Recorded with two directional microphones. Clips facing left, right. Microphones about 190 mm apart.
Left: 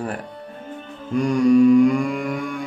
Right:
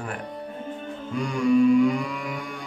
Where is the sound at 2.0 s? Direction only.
50° left (ahead or behind).